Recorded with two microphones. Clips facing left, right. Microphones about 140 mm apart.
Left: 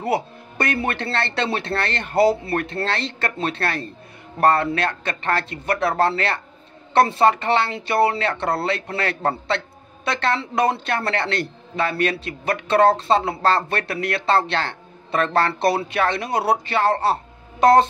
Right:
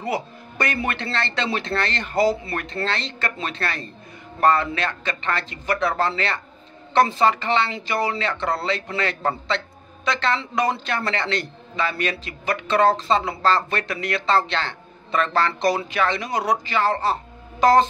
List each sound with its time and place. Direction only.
0.0 s speech: 55° left (ahead or behind)